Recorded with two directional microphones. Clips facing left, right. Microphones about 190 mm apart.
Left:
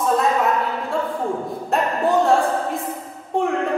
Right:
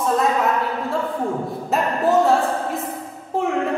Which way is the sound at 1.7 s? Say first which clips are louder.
Even; centre (ahead or behind).